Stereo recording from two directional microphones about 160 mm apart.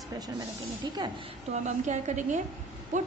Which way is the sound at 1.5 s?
45° right (ahead or behind).